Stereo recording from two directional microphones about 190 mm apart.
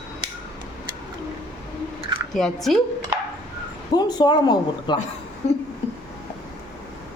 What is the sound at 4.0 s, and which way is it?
Speech, 20° left (ahead or behind).